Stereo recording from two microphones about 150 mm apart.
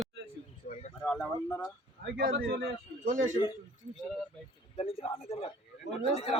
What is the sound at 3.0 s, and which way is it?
Speech, 60° right (ahead or behind).